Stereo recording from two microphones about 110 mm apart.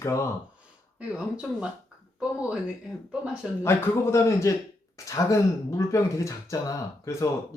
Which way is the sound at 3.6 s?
25° left (ahead or behind).